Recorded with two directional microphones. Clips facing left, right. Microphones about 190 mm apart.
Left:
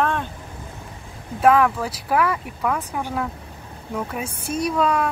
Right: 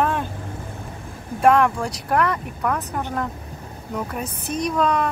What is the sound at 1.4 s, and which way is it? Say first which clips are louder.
Speech: even; centre (ahead or behind).